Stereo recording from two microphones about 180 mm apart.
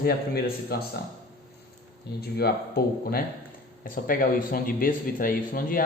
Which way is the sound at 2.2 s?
60° left (ahead or behind).